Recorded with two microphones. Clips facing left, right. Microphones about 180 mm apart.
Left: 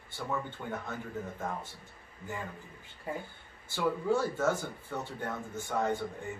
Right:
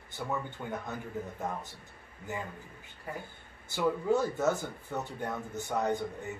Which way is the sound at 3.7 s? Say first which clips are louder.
Right 1 dB; 20° right (ahead or behind).